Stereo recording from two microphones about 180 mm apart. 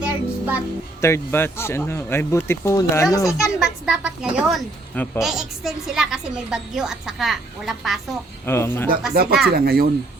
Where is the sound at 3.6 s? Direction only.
5° right (ahead or behind).